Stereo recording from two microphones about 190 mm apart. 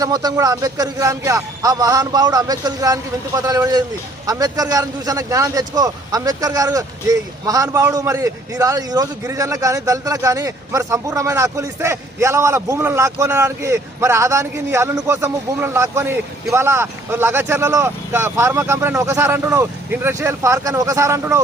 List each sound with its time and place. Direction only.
0.0 s a man's voice: 20° right (ahead or behind)